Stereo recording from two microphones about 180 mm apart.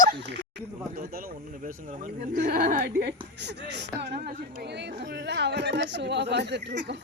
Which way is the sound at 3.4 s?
70° right (ahead or behind).